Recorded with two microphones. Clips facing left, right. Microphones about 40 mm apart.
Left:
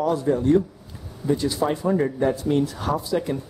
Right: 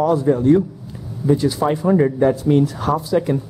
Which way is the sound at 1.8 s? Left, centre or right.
Right.